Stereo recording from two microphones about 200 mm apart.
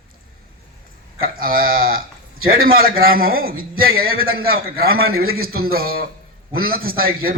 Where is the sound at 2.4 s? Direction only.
45° right (ahead or behind).